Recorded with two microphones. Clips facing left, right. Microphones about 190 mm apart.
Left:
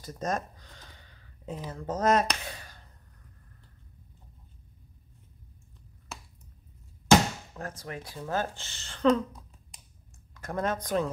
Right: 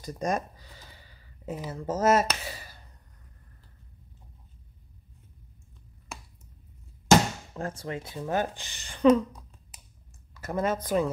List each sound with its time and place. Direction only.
0.0 s speech: 15° right (ahead or behind)
7.5 s speech: 25° right (ahead or behind)
10.3 s speech: 5° right (ahead or behind)